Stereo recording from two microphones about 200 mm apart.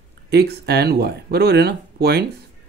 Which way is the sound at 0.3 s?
55° right (ahead or behind).